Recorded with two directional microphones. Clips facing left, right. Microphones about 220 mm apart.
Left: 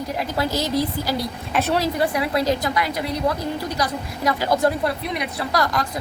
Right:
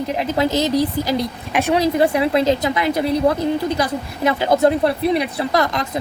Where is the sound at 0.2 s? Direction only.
20° right (ahead or behind).